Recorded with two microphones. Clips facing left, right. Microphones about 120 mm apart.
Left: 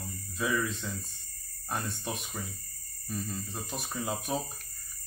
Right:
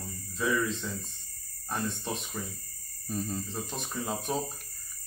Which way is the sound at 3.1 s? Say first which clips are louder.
Right 3 dB; 35° right (ahead or behind).